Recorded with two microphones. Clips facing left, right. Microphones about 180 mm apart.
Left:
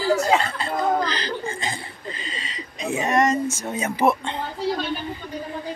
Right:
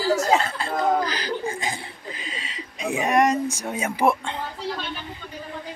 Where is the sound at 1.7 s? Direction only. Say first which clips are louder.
Even; 10° right (ahead or behind).